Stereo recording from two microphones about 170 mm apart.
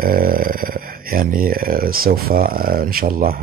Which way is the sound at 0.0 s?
55° right (ahead or behind).